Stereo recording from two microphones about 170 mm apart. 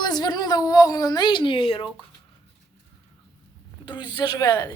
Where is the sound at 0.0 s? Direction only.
25° left (ahead or behind).